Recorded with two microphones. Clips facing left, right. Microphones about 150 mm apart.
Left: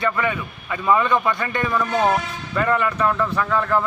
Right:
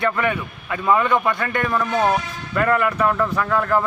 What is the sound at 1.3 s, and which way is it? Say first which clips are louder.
Speech: right 1 dB; 10° left (ahead or behind).